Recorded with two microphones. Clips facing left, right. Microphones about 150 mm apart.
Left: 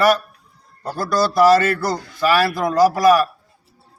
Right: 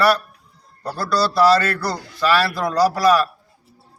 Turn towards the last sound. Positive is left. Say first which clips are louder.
# left 2 dB
turn(degrees=20)  # may be behind; listen again after turning